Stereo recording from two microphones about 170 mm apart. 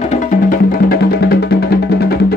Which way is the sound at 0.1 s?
50° left (ahead or behind).